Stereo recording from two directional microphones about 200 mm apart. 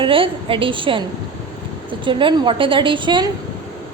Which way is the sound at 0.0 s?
25° right (ahead or behind).